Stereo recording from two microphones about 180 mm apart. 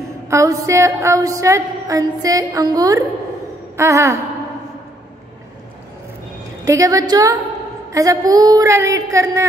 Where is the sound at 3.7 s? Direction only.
15° right (ahead or behind).